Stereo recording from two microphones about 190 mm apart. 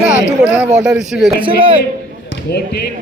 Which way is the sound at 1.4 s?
25° right (ahead or behind).